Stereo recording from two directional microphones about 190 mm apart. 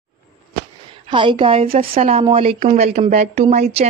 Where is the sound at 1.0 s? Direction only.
25° right (ahead or behind).